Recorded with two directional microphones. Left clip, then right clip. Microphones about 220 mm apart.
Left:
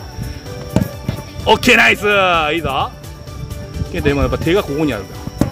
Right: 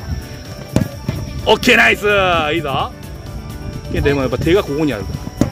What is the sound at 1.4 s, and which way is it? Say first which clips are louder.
Speech: even; 10° left (ahead or behind).